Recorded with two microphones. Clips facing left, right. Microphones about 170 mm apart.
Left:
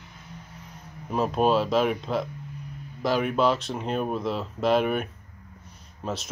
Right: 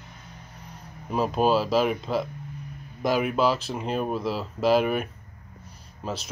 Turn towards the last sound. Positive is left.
turn(degrees=0)  # may be behind; listen again after turning